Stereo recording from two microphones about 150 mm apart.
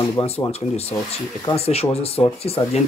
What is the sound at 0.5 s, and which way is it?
Speech, 45° left (ahead or behind).